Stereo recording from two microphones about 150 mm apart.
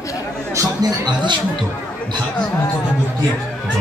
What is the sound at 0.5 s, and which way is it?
Speech, 25° right (ahead or behind).